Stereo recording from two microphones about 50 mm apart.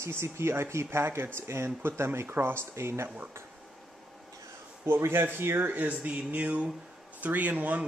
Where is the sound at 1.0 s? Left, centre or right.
Right.